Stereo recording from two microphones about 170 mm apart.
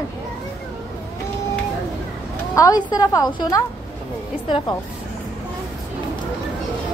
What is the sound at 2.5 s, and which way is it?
Speech, 20° left (ahead or behind).